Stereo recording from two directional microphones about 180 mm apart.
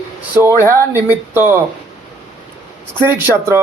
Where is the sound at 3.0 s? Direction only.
15° right (ahead or behind).